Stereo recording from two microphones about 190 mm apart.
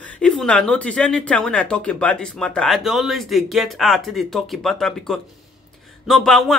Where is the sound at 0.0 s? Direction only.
5° left (ahead or behind).